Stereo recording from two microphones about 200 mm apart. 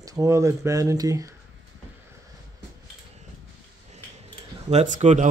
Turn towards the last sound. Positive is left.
turn(degrees=-35)  # may be behind; listen again after turning